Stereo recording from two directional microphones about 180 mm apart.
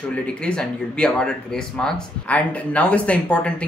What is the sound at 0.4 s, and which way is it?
Speech, 5° left (ahead or behind).